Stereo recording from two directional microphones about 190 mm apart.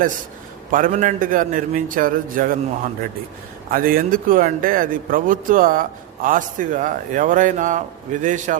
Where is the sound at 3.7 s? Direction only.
50° right (ahead or behind).